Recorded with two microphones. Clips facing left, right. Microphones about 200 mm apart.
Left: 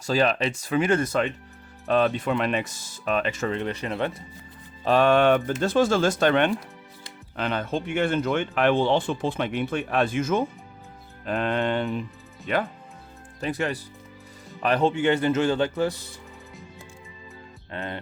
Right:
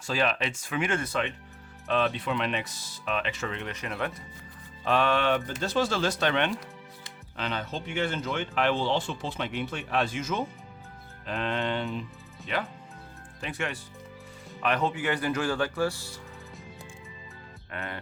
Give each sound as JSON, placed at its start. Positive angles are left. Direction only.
{"t": 0.0, "sound": "speech", "side_deg": 40}
{"t": 4.9, "sound": "speech", "side_deg": 45}
{"t": 13.4, "sound": "speech", "side_deg": 35}
{"t": 17.7, "sound": "speech", "side_deg": 30}